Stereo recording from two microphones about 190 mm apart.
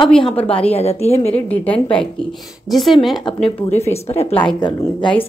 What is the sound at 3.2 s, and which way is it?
Speech, 35° left (ahead or behind).